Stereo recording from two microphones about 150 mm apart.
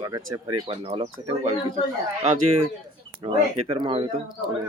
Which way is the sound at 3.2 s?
30° right (ahead or behind).